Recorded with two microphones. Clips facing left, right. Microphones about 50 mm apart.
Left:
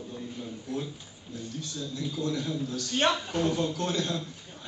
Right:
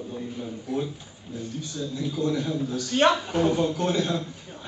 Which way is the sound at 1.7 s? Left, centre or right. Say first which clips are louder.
Right 5 dB; centre.